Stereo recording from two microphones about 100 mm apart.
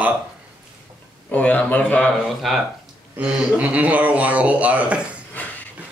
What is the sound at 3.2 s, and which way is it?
Speech, 15° right (ahead or behind).